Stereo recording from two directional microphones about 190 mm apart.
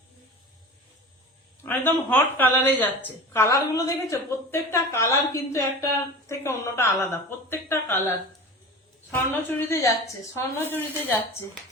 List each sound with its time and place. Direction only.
1.6 s a woman's voice: 10° left (ahead or behind)
9.3 s a woman's voice: 10° left (ahead or behind)